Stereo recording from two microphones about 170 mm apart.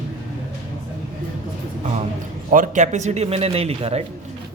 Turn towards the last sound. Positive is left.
turn(degrees=-35)  # may be behind; listen again after turning